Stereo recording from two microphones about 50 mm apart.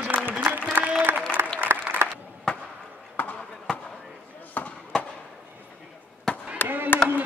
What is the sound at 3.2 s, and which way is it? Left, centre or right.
Basketball bounce, left.